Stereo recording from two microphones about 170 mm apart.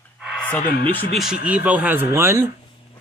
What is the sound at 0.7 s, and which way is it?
Speech, 70° left (ahead or behind).